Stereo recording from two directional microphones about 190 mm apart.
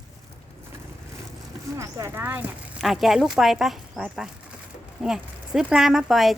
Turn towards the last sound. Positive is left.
turn(degrees=0)  # may be behind; listen again after turning